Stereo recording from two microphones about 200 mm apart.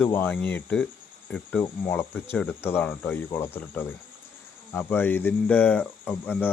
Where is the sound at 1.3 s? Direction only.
5° left (ahead or behind).